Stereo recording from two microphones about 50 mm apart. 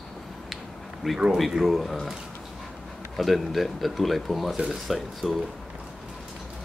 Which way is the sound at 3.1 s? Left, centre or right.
Centre.